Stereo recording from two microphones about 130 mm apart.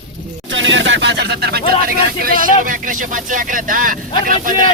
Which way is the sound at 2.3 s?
90° right.